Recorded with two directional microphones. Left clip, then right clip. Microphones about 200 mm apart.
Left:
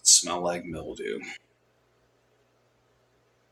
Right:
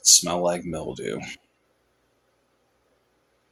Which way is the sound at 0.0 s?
40° right (ahead or behind).